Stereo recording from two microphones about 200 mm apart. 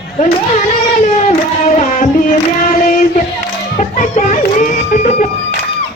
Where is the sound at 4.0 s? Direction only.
35° left (ahead or behind).